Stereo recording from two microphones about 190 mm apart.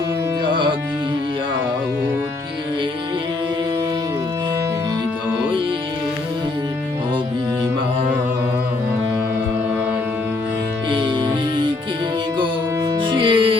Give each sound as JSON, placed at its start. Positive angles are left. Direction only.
{"t": 0.4, "sound": "music", "side_deg": -25}
{"t": 10.8, "sound": "music", "side_deg": -25}
{"t": 13.0, "sound": "music", "side_deg": -25}